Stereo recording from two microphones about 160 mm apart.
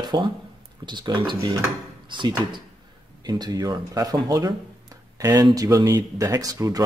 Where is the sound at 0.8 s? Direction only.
30° right (ahead or behind).